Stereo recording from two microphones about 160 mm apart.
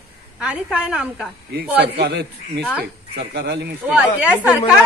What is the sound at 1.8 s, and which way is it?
A man's voice, 90° right.